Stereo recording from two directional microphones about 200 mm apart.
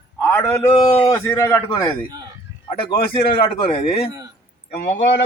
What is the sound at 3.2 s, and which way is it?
Speech, 25° left (ahead or behind).